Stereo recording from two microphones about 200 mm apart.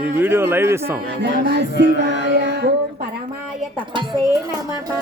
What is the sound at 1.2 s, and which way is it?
Music, 55° right (ahead or behind).